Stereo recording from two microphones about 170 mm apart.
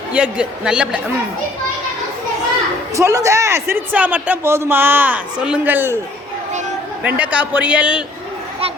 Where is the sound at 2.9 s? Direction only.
20° right (ahead or behind).